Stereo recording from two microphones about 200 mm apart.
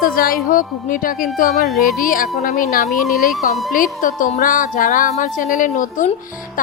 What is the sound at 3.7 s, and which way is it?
Speech, 45° left (ahead or behind).